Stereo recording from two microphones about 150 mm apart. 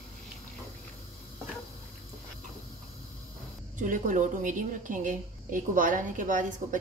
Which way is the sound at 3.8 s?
60° right (ahead or behind).